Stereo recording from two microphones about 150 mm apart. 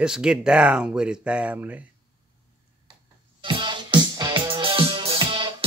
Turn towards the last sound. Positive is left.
turn(degrees=-35)  # may be behind; listen again after turning